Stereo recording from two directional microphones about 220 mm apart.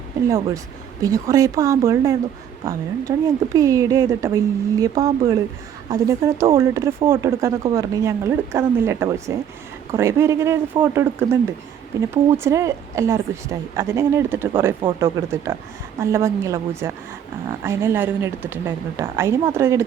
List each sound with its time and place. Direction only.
0.3 s speech: 15° right (ahead or behind)